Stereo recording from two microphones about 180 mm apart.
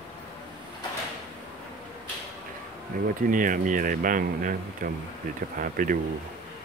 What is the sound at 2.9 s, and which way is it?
Speech, 50° right (ahead or behind).